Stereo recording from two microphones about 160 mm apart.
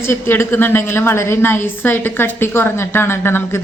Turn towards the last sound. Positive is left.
turn(degrees=15)  # may be behind; listen again after turning